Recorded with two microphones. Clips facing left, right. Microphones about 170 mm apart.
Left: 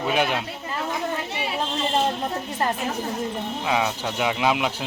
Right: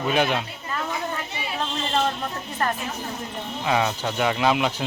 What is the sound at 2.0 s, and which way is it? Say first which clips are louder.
Speech: left 2 dB; 20° left (ahead or behind).